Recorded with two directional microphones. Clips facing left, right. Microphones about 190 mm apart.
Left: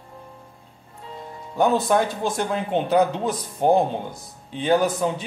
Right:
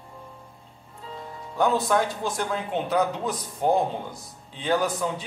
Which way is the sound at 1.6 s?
25° left (ahead or behind).